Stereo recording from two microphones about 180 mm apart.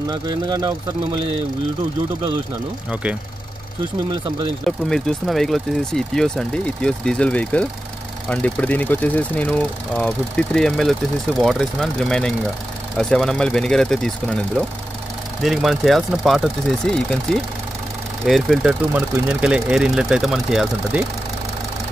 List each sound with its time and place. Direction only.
0.1 s speech: 25° right (ahead or behind)
2.9 s speech: 5° right (ahead or behind)
4.6 s speech: 5° left (ahead or behind)
15.4 s speech: centre (ahead or behind)